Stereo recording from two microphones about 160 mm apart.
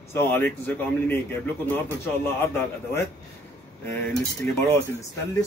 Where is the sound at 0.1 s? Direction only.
15° left (ahead or behind).